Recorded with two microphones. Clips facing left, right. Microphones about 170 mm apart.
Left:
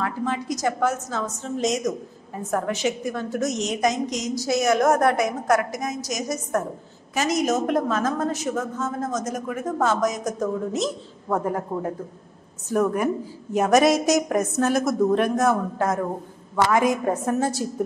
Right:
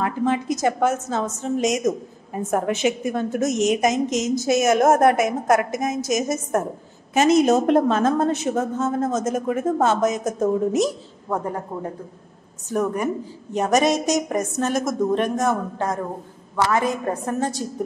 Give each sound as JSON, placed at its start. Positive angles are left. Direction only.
{"t": 0.0, "sound": "a woman's voice", "side_deg": -20}
{"t": 11.2, "sound": "a woman's voice", "side_deg": 5}